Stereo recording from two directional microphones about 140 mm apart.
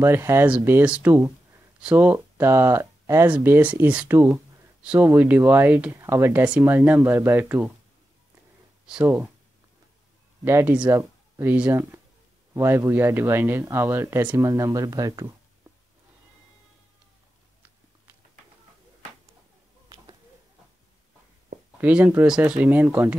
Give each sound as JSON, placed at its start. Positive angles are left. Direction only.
{"t": 0.0, "sound": "speech", "side_deg": -20}
{"t": 10.4, "sound": "speech", "side_deg": -15}
{"t": 11.0, "sound": "a sound", "side_deg": -20}
{"t": 11.5, "sound": "speech", "side_deg": -15}
{"t": 21.8, "sound": "speech", "side_deg": -10}